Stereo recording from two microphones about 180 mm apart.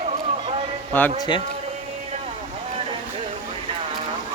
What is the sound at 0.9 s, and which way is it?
Speech, 10° left (ahead or behind).